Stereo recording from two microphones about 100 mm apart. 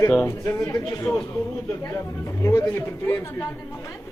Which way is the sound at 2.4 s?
30° left (ahead or behind).